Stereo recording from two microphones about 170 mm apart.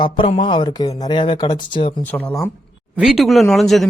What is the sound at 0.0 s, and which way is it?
Speech, 30° left (ahead or behind).